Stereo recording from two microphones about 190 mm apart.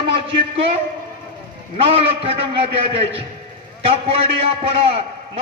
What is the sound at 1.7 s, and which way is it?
A man's voice, 30° right (ahead or behind).